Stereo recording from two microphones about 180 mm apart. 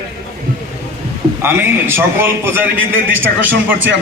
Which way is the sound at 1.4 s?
15° right (ahead or behind).